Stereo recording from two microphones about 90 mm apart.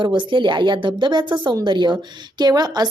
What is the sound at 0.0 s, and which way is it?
Speech, 65° right (ahead or behind).